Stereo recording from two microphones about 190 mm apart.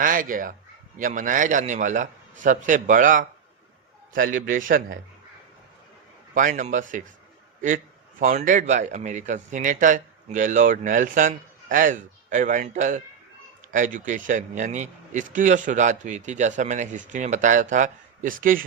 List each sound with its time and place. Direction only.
0.0 s a man's voice: 45° right (ahead or behind)
6.3 s a man's voice: 40° right (ahead or behind)
8.2 s a man's voice: 40° right (ahead or behind)